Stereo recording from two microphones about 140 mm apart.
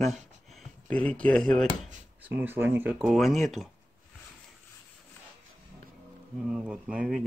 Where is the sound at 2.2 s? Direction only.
10° right (ahead or behind).